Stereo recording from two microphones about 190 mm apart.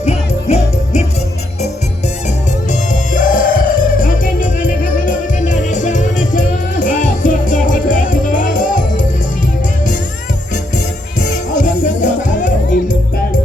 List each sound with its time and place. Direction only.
0.0 s music: 35° left (ahead or behind)
2.9 s music: 45° left (ahead or behind)
11.2 s music: 40° left (ahead or behind)